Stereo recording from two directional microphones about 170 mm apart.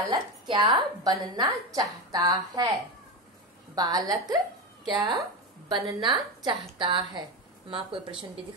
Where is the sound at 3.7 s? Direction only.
20° right (ahead or behind).